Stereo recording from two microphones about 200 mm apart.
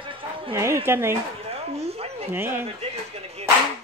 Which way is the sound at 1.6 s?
30° right (ahead or behind).